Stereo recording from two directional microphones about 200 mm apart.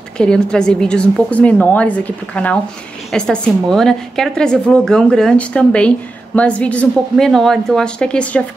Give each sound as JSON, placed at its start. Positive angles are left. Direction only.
{"t": 0.2, "sound": "a woman's voice", "side_deg": 5}